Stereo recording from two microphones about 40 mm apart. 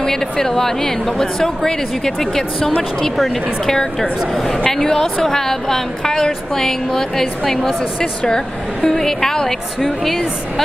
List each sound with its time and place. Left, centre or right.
0.0 s a woman's voice: centre
8.0 s a woman's voice: left; by 10.2 s centre